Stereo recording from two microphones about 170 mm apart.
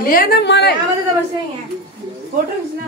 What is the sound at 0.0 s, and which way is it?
Speech, 60° left (ahead or behind).